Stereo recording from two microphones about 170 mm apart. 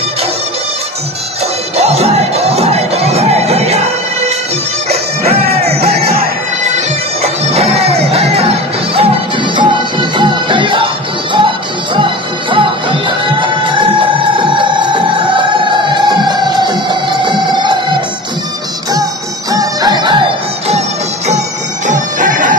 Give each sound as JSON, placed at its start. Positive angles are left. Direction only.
{"t": 1.8, "sound": "music", "side_deg": -40}
{"t": 19.5, "sound": "music", "side_deg": -20}
{"t": 21.8, "sound": "music", "side_deg": -50}